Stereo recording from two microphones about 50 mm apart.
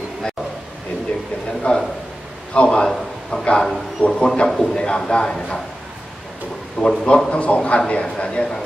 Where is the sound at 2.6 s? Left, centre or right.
Centre.